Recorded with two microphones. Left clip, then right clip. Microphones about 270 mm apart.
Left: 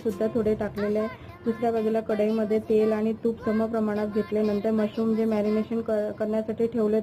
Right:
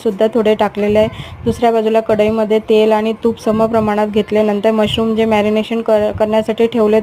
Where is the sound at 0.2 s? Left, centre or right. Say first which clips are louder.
Right 15 dB; right.